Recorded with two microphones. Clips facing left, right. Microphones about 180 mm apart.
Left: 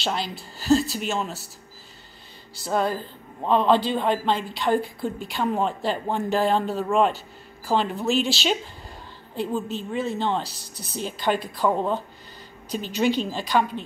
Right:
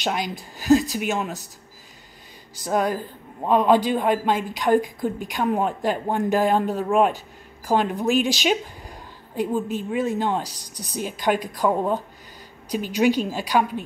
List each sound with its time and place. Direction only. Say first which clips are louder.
0.0 s a man's voice: right 2 dB; 15° right (ahead or behind)
2.6 s a man's voice: right 2 dB; 15° right (ahead or behind)